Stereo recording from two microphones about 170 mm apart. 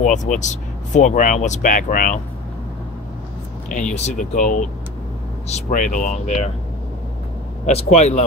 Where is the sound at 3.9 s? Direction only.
40° left (ahead or behind).